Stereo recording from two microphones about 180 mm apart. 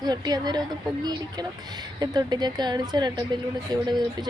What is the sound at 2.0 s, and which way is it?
Speech, 20° right (ahead or behind).